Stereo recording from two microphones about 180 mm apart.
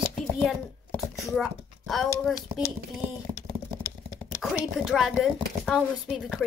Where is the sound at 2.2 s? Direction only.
Centre (ahead or behind).